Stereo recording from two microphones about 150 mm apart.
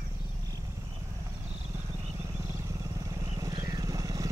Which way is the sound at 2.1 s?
20° right (ahead or behind).